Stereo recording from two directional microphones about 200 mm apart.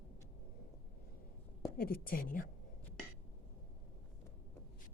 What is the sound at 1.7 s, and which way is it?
Speech, 50° left (ahead or behind).